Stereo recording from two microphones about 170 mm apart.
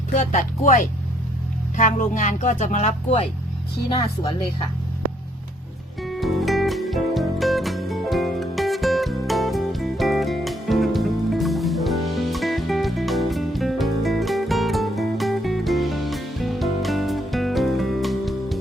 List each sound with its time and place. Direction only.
0.2 s speech: 50° left (ahead or behind)
3.8 s speech: 30° left (ahead or behind)
6.0 s music: centre (ahead or behind)